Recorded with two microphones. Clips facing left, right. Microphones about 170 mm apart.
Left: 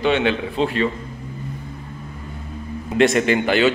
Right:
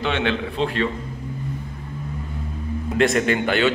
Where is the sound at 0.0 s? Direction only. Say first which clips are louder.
Left 4 dB; 5° left (ahead or behind).